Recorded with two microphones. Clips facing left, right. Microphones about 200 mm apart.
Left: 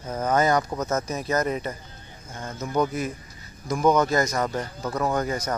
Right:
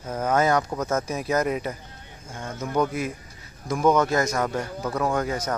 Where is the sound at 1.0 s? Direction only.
10° right (ahead or behind).